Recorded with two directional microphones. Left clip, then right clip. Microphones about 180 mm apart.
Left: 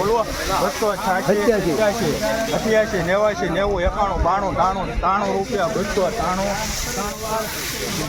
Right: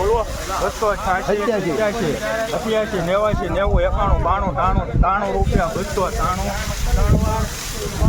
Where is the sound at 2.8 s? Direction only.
40° right (ahead or behind).